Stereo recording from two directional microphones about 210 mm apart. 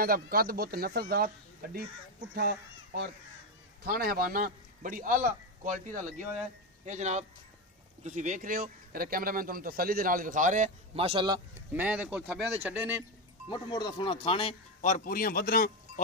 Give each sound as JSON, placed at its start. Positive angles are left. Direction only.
{"t": 0.0, "sound": "speech", "side_deg": -45}
{"t": 3.8, "sound": "speech", "side_deg": -45}
{"t": 11.7, "sound": "speech", "side_deg": -5}
{"t": 13.5, "sound": "speech", "side_deg": 20}
{"t": 14.8, "sound": "a man's voice", "side_deg": 40}